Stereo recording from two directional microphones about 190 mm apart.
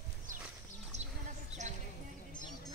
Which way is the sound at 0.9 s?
35° right (ahead or behind).